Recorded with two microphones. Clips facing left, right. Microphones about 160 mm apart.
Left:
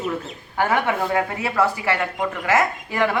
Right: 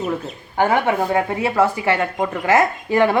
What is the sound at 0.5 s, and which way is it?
A woman's voice, 25° right (ahead or behind).